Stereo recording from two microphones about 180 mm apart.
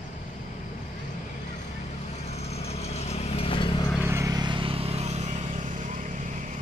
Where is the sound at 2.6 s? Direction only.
35° left (ahead or behind).